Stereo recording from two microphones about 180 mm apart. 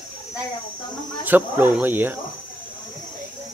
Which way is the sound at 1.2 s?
10° right (ahead or behind).